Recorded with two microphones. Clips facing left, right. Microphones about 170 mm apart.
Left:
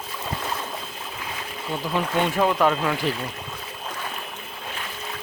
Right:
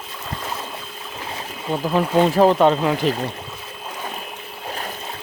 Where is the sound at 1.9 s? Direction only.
35° right (ahead or behind).